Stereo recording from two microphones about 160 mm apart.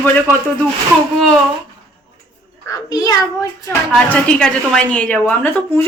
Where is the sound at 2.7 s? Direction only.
25° left (ahead or behind).